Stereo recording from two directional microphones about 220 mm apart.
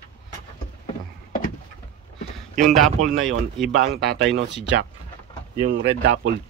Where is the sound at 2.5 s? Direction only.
Centre (ahead or behind).